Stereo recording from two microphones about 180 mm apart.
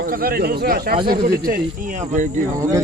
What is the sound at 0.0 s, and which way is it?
Speech, 55° right (ahead or behind).